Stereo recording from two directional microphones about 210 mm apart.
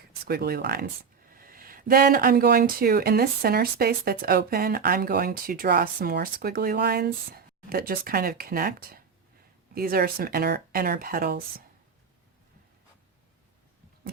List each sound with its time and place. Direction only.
0.3 s speech: 45° right (ahead or behind)